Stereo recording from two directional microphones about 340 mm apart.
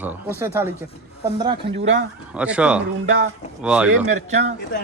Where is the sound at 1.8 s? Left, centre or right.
Right.